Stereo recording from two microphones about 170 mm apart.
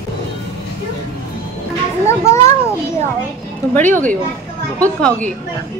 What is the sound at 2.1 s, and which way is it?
Speech, 15° left (ahead or behind).